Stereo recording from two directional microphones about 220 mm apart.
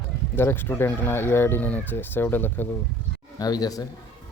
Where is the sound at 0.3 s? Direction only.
10° left (ahead or behind).